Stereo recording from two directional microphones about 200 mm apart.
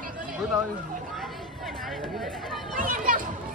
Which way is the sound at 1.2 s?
Centre (ahead or behind).